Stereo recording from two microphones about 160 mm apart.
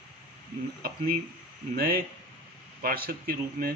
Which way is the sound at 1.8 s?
65° right (ahead or behind).